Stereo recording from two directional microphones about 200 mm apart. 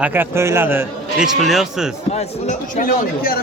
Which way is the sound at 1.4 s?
Centre (ahead or behind).